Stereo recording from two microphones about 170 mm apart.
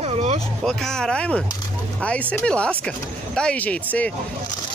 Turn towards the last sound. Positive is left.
turn(degrees=10)  # may be behind; listen again after turning